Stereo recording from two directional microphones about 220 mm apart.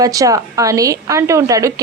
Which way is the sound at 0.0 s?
15° right (ahead or behind).